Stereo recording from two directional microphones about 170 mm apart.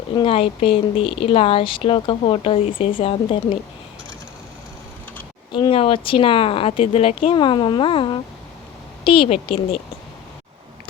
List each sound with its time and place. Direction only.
0.2 s a woman's voice: 35° left (ahead or behind)
5.5 s a woman's voice: 30° left (ahead or behind)